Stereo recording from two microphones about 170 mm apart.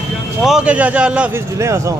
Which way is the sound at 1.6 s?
15° right (ahead or behind).